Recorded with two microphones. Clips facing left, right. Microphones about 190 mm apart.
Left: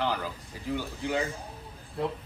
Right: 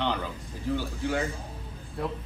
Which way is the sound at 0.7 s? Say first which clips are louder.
Right 2 dB; 15° left (ahead or behind).